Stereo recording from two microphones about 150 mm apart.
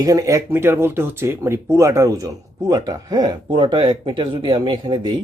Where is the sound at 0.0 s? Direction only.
20° right (ahead or behind).